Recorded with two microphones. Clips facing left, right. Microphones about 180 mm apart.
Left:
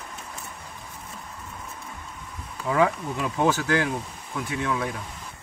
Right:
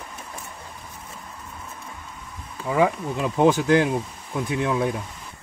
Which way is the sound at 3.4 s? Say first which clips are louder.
Right 6 dB; 15° right (ahead or behind).